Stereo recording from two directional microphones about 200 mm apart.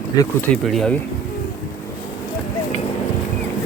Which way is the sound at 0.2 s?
5° left (ahead or behind).